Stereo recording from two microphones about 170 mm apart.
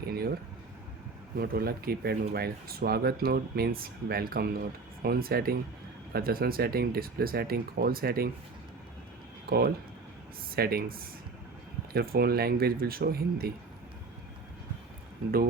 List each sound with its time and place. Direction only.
1.4 s speech: 65° right (ahead or behind)
9.5 s speech: 65° right (ahead or behind)